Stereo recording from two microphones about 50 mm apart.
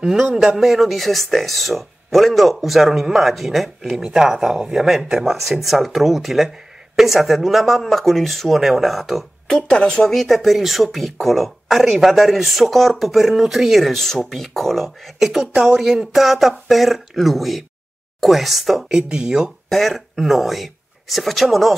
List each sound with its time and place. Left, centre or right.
0.0 s speech: centre
9.5 s speech: centre
18.9 s speech: centre
19.7 s speech: centre